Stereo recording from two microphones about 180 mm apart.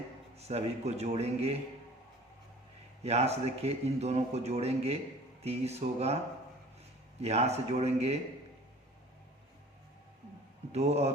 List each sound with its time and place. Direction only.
0.3 s a man's voice: 35° right (ahead or behind)
3.0 s a man's voice: 35° right (ahead or behind)
7.2 s a man's voice: 35° right (ahead or behind)
10.7 s a man's voice: 35° right (ahead or behind)